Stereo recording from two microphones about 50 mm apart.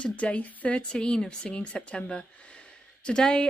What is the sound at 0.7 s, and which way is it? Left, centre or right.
Speech, centre.